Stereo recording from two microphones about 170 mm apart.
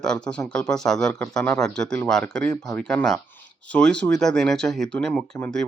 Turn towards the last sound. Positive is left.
turn(degrees=5)  # may be behind; listen again after turning